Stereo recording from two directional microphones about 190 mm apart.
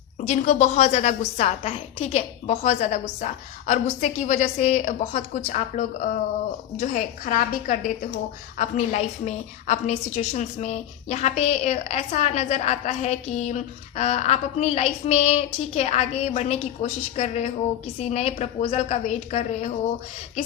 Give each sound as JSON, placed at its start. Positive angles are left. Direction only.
{"t": 0.3, "sound": "a woman's voice", "side_deg": 40}